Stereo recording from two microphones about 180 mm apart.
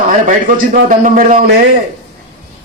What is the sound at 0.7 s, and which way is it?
Music, 50° right (ahead or behind).